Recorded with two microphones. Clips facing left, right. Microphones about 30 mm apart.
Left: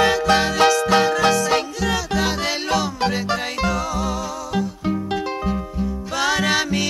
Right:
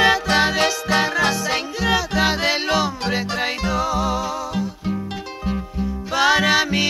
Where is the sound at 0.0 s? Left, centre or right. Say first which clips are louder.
Even; centre.